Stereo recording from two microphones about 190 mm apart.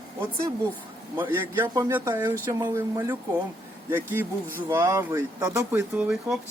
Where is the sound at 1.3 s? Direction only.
10° right (ahead or behind).